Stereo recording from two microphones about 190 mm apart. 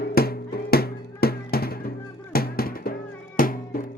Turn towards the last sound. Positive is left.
turn(degrees=45)  # may be behind; listen again after turning